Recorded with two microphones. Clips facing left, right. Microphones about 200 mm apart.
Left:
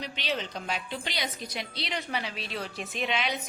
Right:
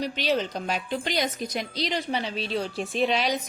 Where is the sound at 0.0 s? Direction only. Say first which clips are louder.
Right 8 dB; 40° right (ahead or behind).